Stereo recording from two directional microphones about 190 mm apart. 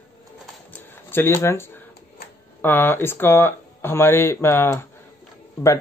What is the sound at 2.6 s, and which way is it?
Speech, 10° left (ahead or behind).